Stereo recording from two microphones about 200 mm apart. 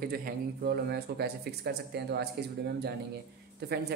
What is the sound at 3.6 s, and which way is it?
Speech, 55° right (ahead or behind).